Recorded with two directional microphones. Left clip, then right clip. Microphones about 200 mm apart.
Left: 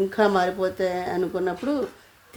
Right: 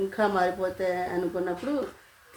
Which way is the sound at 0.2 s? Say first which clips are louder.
Left 4 dB; 50° left (ahead or behind).